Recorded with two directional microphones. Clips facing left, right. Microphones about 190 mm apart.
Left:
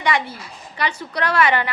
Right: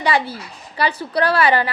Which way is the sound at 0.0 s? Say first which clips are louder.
Right 2 dB; 35° right (ahead or behind).